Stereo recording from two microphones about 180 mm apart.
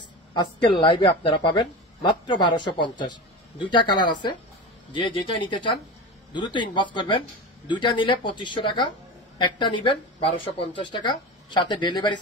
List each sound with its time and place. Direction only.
0.3 s a woman's voice: 25° left (ahead or behind)